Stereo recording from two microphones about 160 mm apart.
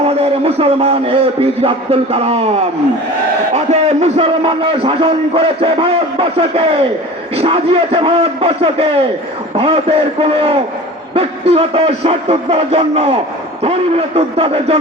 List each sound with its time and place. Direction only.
0.2 s a man's voice: 40° right (ahead or behind)
3.5 s a man's voice: 40° right (ahead or behind)